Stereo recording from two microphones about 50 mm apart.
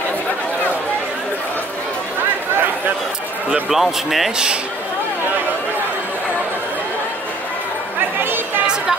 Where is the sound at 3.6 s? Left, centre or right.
Centre.